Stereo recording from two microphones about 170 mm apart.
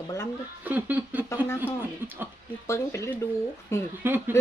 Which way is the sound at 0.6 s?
10° right (ahead or behind).